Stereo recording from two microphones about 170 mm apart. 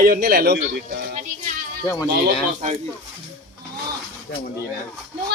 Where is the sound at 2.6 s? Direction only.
50° right (ahead or behind).